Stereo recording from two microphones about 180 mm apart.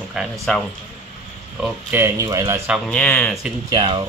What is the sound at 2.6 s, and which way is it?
Speech, centre (ahead or behind).